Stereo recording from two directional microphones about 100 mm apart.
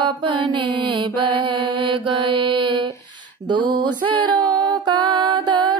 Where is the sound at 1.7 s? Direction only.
75° right (ahead or behind); by 2.9 s 55° right (ahead or behind).